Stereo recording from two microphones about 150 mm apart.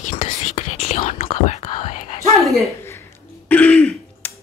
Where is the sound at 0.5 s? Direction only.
45° left (ahead or behind).